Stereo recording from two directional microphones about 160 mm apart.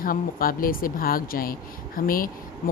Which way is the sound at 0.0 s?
60° left (ahead or behind).